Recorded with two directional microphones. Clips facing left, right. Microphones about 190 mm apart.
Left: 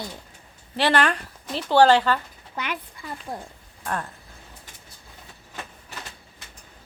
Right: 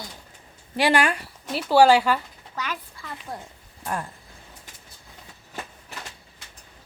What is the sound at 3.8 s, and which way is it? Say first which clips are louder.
Speech: even; 10° right (ahead or behind).